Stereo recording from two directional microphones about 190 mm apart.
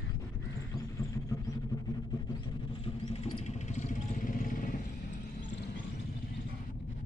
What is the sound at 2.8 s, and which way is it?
Vehicle, 30° left (ahead or behind).